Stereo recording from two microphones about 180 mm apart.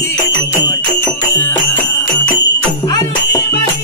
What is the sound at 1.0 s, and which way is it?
Music, 10° left (ahead or behind).